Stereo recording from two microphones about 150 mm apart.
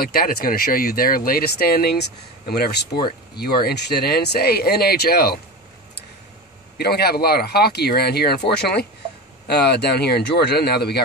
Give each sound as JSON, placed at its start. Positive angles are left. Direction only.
{"t": 0.0, "sound": "speech", "side_deg": 90}
{"t": 6.8, "sound": "speech", "side_deg": 90}